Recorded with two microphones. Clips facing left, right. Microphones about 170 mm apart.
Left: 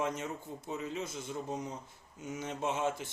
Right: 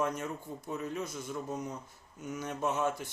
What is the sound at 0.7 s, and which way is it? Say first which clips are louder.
Speech: right 1 dB; 50° right (ahead or behind).